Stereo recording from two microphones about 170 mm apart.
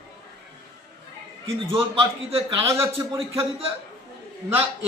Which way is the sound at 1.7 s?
30° right (ahead or behind).